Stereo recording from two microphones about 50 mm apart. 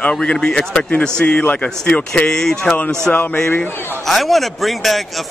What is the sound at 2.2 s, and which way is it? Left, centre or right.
A man's voice, centre.